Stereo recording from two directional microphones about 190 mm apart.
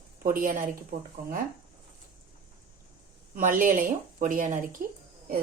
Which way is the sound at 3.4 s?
45° right (ahead or behind).